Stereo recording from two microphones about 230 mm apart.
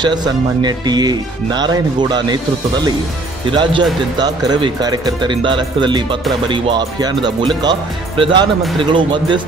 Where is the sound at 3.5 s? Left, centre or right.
Right.